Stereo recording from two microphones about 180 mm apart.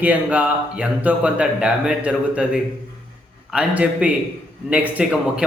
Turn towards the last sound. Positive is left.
turn(degrees=-5)  # may be behind; listen again after turning